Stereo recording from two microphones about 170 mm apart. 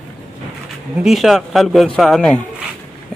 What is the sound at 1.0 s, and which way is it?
A man's voice, centre (ahead or behind).